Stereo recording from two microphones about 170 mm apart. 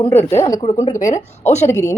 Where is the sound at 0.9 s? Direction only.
50° left (ahead or behind).